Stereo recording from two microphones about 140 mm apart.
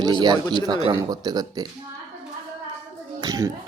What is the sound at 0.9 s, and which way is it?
Speech, 30° right (ahead or behind).